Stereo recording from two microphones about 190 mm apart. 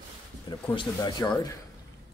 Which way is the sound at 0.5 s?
25° left (ahead or behind).